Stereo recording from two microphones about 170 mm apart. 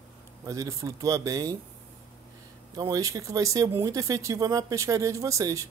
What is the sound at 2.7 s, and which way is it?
Speech, 20° right (ahead or behind).